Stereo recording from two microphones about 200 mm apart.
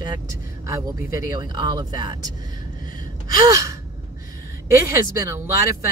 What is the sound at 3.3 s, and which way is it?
Speech, 20° right (ahead or behind).